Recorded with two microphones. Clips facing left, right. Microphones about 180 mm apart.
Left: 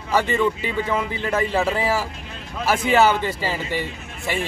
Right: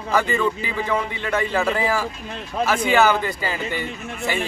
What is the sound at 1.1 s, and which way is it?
Speech, 35° left (ahead or behind).